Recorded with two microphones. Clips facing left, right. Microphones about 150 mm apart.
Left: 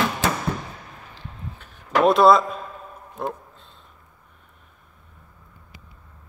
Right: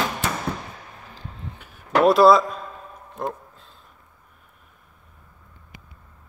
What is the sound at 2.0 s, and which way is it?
A man's voice, centre (ahead or behind).